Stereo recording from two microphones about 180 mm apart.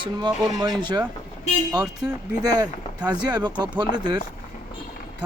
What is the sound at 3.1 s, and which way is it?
Speech, 25° right (ahead or behind).